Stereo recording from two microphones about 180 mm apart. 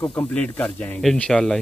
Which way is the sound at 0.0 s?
5° left (ahead or behind).